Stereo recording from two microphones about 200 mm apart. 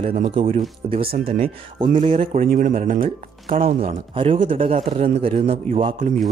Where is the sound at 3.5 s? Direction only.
30° right (ahead or behind).